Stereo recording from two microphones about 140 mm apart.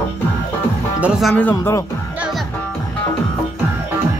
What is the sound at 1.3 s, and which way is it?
Speech, 15° left (ahead or behind).